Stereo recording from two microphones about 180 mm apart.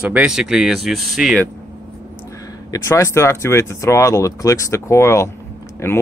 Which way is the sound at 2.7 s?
15° left (ahead or behind).